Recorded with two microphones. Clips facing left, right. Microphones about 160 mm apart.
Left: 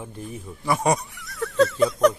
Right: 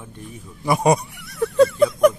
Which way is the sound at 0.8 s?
10° right (ahead or behind).